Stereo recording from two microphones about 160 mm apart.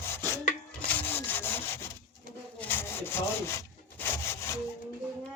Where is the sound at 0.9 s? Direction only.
10° left (ahead or behind).